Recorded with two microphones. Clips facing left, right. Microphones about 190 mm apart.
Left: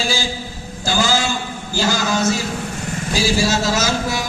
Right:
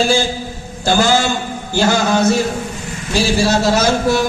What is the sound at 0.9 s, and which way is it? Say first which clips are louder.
A man's voice: right 5 dB; 60° right (ahead or behind).